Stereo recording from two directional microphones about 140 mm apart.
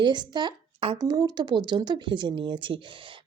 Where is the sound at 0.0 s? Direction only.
30° right (ahead or behind).